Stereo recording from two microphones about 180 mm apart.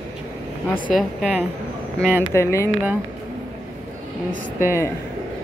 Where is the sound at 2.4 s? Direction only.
15° left (ahead or behind).